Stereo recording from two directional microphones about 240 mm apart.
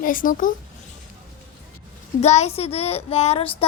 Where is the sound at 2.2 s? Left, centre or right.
Left.